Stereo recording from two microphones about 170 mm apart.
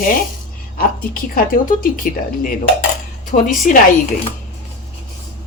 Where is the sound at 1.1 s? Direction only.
55° left (ahead or behind).